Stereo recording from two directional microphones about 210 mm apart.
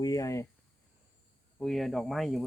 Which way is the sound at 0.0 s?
15° left (ahead or behind).